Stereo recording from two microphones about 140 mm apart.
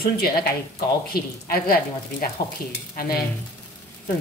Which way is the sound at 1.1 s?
90° left.